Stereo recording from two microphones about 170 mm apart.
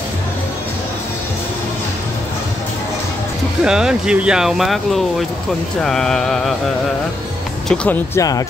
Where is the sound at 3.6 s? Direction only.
5° right (ahead or behind).